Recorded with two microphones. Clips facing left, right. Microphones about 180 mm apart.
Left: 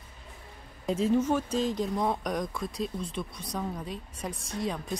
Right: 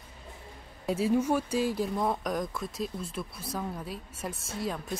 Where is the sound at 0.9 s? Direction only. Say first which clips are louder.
Left 1 dB; 10° right (ahead or behind).